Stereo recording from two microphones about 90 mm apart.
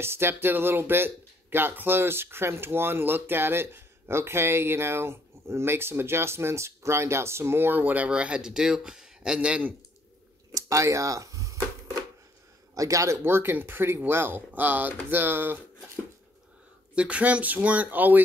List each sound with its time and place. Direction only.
0.0 s speech: 25° right (ahead or behind)
10.5 s a sound: 35° right (ahead or behind)
12.7 s speech: 40° right (ahead or behind)
16.9 s speech: 15° right (ahead or behind)